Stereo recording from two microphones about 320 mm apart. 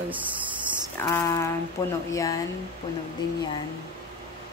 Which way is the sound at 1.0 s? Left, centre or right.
Centre.